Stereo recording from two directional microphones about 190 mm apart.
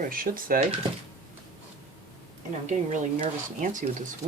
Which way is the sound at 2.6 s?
40° right (ahead or behind).